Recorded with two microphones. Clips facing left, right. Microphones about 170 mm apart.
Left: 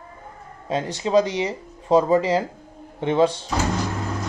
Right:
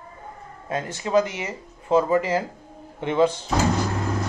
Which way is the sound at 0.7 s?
25° left (ahead or behind).